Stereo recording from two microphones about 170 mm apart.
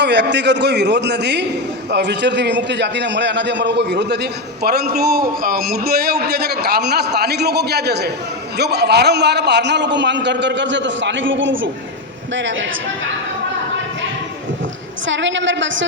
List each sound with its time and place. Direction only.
0.0 s a man's voice: 90° right
15.0 s a man's voice: 90° right